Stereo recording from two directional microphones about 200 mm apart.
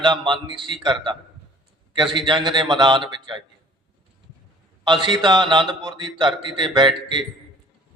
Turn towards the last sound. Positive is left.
turn(degrees=-25)  # may be behind; listen again after turning